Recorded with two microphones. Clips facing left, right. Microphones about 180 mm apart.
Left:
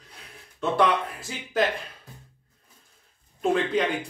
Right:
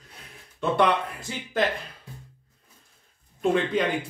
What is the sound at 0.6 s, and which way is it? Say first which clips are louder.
A man's voice: even; centre (ahead or behind).